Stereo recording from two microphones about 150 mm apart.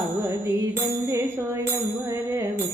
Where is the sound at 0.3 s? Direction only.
20° right (ahead or behind).